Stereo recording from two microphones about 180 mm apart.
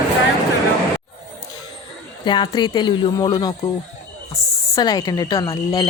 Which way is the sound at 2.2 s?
25° left (ahead or behind).